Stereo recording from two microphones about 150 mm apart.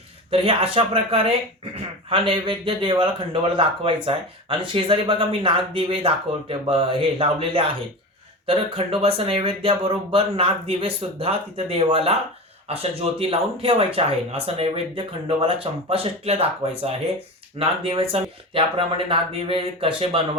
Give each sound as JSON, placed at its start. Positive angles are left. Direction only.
{"t": 0.3, "sound": "speech", "side_deg": -40}